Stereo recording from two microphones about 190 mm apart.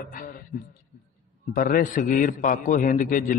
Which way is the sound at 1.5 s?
50° left (ahead or behind).